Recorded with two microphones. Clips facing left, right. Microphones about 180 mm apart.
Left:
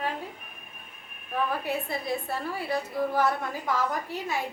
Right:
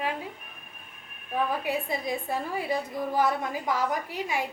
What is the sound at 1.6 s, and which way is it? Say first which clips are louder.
A woman's voice: right 1 dB; 15° right (ahead or behind).